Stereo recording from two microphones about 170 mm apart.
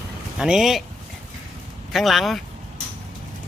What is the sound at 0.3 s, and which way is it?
Speech, 5° right (ahead or behind).